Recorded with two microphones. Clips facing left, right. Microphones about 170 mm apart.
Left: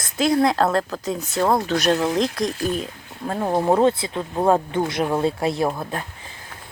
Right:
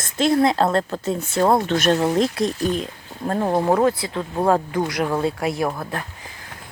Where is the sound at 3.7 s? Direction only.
25° left (ahead or behind).